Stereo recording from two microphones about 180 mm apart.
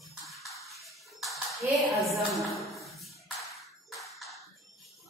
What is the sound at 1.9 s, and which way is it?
Speech, centre (ahead or behind).